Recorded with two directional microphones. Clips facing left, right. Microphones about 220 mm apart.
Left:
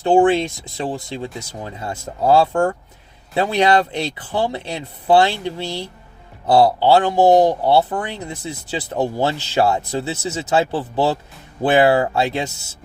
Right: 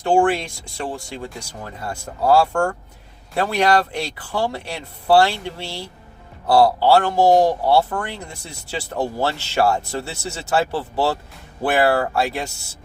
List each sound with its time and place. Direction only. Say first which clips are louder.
0.1 s speech: left 3 dB; 20° left (ahead or behind)